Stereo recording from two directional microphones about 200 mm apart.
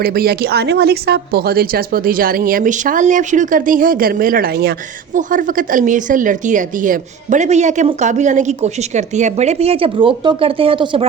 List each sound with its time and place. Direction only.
0.0 s a woman's voice: 50° right (ahead or behind); by 11.0 s 25° right (ahead or behind)